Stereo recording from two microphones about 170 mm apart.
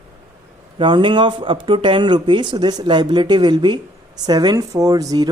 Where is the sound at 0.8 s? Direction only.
30° right (ahead or behind).